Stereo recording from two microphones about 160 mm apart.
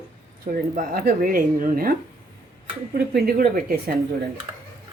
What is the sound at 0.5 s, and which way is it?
Speech, 70° right (ahead or behind).